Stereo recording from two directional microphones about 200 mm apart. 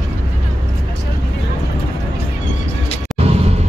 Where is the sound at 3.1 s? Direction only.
30° right (ahead or behind).